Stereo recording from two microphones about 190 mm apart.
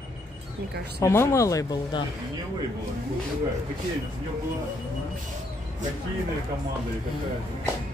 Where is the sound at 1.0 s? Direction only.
15° left (ahead or behind).